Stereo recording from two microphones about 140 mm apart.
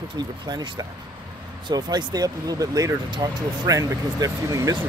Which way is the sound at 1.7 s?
30° right (ahead or behind).